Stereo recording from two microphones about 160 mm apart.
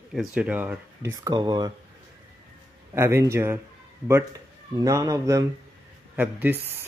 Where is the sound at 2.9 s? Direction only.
15° right (ahead or behind).